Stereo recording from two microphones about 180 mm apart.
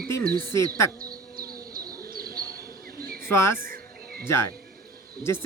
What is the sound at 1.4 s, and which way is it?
Bird, 55° right (ahead or behind).